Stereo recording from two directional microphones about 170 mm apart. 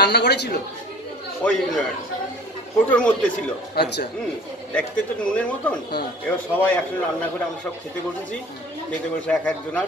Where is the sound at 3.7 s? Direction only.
75° left (ahead or behind).